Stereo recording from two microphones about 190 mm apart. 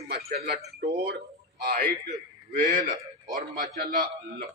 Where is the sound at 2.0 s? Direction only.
45° right (ahead or behind).